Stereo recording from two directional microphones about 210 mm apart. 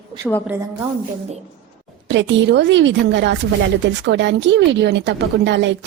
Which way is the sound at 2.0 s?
60° right (ahead or behind).